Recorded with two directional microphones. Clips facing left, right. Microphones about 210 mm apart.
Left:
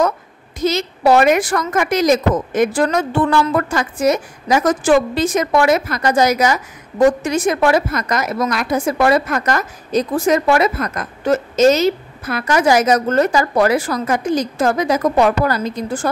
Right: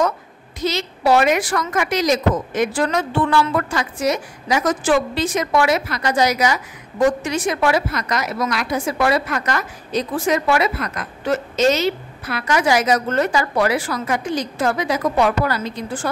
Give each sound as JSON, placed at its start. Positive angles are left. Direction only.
{"t": 0.6, "sound": "a woman's voice", "side_deg": 45}